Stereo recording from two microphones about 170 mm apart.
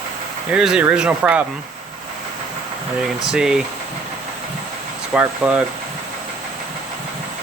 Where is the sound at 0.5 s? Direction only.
5° right (ahead or behind).